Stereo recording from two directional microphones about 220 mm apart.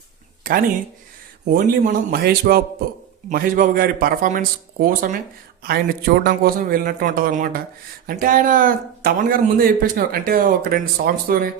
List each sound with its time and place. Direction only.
0.4 s a man's voice: 40° right (ahead or behind)